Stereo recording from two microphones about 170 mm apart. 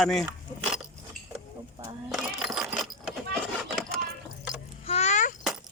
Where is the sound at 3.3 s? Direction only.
5° left (ahead or behind).